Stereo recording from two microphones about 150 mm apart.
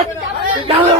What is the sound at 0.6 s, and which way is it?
Speech, 40° right (ahead or behind).